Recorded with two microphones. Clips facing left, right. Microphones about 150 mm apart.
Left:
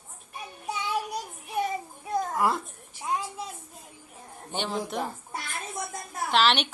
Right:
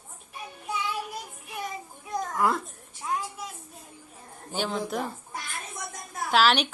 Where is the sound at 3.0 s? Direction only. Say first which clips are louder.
Left 1 dB; 25° left (ahead or behind).